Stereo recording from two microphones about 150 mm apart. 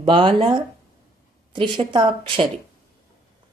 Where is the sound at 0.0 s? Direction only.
35° right (ahead or behind).